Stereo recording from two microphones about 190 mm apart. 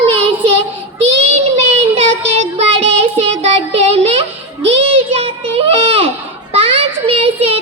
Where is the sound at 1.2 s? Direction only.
30° right (ahead or behind).